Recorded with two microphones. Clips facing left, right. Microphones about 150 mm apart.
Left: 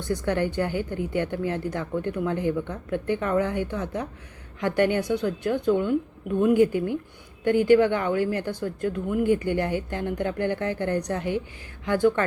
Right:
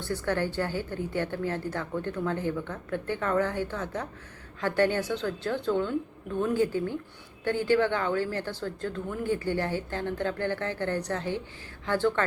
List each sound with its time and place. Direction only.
0.0 s a woman's voice: 15° left (ahead or behind)